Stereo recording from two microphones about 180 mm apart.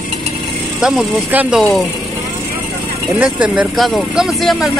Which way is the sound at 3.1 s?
5° right (ahead or behind).